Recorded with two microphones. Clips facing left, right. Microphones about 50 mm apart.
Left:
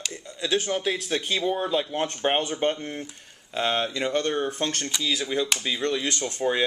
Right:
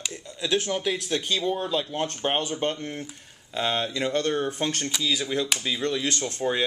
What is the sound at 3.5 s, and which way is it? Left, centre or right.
Speech, centre.